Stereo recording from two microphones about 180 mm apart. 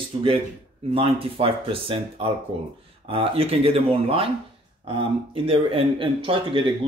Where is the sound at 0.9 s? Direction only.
30° right (ahead or behind).